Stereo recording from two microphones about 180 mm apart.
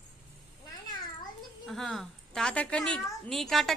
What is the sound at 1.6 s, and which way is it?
A woman's voice, centre (ahead or behind).